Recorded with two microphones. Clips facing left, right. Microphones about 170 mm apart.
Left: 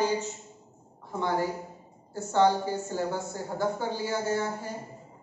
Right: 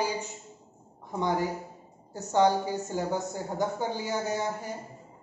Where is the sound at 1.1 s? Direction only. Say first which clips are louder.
Even; 15° right (ahead or behind).